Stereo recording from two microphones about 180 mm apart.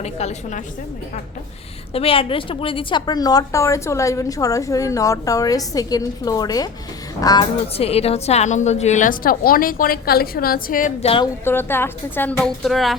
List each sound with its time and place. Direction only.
0.0 s a woman's voice: 35° left (ahead or behind)
1.9 s a woman's voice: 30° left (ahead or behind)
7.8 s a woman's voice: 35° left (ahead or behind); by 10.9 s 50° left (ahead or behind)
11.0 s a woman's voice: 30° left (ahead or behind)
11.4 s a woman's voice: 10° left (ahead or behind)